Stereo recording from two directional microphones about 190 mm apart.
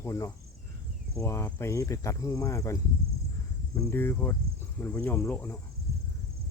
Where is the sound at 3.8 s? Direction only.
15° left (ahead or behind).